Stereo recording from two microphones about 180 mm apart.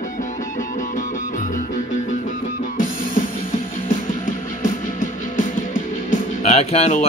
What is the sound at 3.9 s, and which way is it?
Music, 45° left (ahead or behind).